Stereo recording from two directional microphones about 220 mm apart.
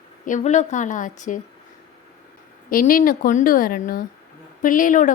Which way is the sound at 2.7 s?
40° left (ahead or behind).